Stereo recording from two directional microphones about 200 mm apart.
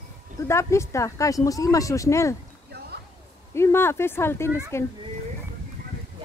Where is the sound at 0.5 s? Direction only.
15° left (ahead or behind).